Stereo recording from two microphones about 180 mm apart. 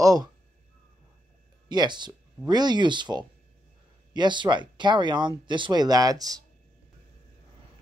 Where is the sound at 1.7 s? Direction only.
25° right (ahead or behind).